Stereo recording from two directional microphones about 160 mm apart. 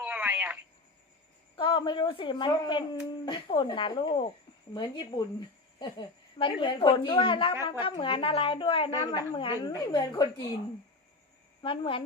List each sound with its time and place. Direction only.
0.0 s telephone: 10° right (ahead or behind)
1.5 s a child's voice: 30° left (ahead or behind)
11.6 s a woman's voice: 35° left (ahead or behind)